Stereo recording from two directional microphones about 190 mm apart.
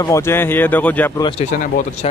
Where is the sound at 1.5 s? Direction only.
40° left (ahead or behind).